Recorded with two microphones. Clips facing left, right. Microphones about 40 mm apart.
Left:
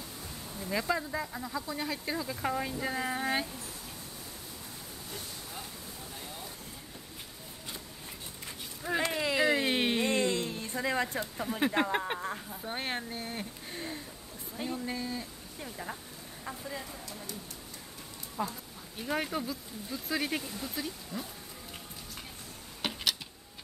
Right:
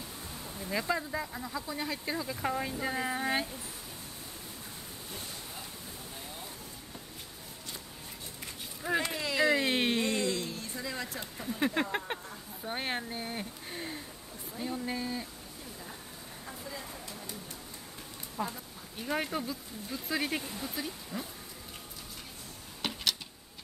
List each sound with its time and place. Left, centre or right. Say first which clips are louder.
0.6 s speech: left 1 dB; centre
8.8 s speech: even; centre
9.1 s speech: left 1 dB; centre
10.0 s a sound: left 2 dB; left
11.6 s speech: left 2 dB; centre
12.6 s speech: right 1 dB; centre
15.6 s a woman's voice: left 7 dB; left
18.4 s speech: left 1 dB; centre
22.8 s insect: even; centre